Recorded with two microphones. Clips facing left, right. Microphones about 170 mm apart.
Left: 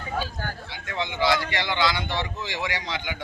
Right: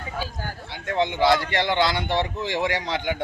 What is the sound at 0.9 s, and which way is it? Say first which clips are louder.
A man's voice: right 5 dB; 55° right (ahead or behind).